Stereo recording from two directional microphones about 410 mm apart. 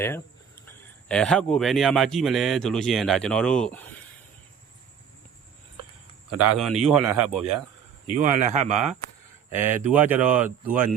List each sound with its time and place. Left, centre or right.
0.6 s speech: centre
6.3 s speech: centre
8.2 s speech: centre
9.5 s speech: centre